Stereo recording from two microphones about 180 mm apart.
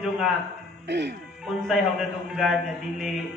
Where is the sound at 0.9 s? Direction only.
75° right (ahead or behind).